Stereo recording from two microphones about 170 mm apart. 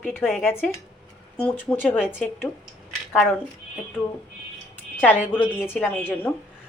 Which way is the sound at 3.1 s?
10° left (ahead or behind).